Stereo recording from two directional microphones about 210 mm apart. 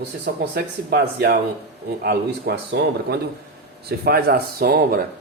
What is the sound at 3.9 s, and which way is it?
Speech, 45° right (ahead or behind).